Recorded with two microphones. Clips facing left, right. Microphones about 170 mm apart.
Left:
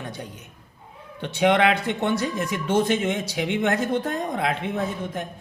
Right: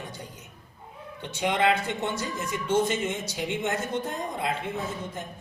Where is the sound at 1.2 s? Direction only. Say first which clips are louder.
Left 5 dB; 70° left (ahead or behind).